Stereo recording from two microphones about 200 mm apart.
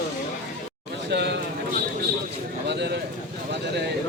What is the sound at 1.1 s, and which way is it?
Speech, 60° right (ahead or behind).